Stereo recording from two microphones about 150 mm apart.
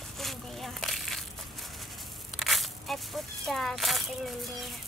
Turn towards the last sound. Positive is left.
turn(degrees=0)  # may be behind; listen again after turning